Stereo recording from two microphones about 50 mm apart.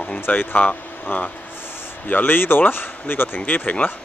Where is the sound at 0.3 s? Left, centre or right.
Left.